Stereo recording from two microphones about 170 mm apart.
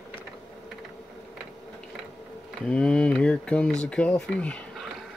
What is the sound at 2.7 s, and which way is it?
Speech, 5° left (ahead or behind).